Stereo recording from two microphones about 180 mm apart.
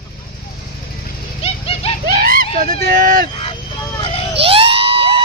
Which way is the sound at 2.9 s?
50° right (ahead or behind).